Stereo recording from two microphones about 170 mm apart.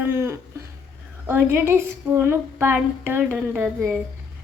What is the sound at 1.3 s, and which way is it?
Speech, 15° right (ahead or behind).